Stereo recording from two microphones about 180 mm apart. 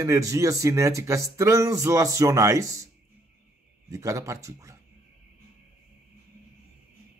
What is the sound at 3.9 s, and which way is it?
Speech, 20° right (ahead or behind).